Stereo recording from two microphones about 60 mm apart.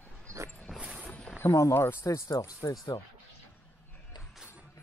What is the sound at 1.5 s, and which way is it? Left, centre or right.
Speech, left.